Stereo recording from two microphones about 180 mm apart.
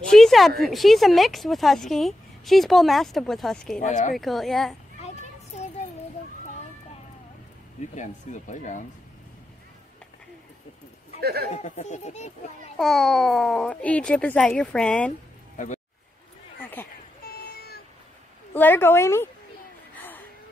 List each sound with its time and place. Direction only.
0.1 s a sound: centre (ahead or behind)
0.6 s speech: centre (ahead or behind)
3.8 s speech: 45° left (ahead or behind)
4.2 s speech: centre (ahead or behind)
7.9 s speech: 40° left (ahead or behind)
11.1 s speech: 60° right (ahead or behind)
11.5 s a child's voice: 40° left (ahead or behind)
12.7 s speech: centre (ahead or behind)
15.5 s a sound: 45° left (ahead or behind)
17.2 s a sound: 55° left (ahead or behind)
18.5 s a woman's voice: 10° left (ahead or behind)